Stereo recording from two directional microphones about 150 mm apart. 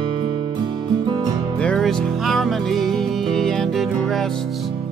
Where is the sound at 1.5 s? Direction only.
5° left (ahead or behind).